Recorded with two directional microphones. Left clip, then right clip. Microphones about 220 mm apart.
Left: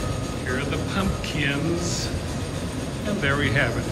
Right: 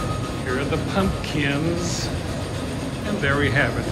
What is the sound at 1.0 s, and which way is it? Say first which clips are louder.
Speech: right 2 dB; 5° right (ahead or behind).